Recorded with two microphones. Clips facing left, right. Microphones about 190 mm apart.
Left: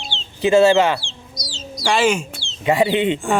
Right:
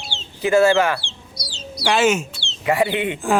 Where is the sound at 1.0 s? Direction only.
60° right (ahead or behind).